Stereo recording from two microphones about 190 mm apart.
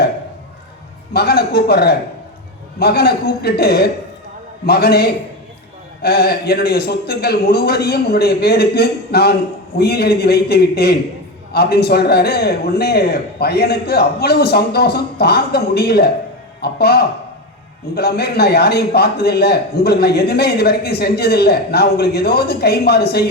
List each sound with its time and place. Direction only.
1.1 s a man's voice: 55° left (ahead or behind)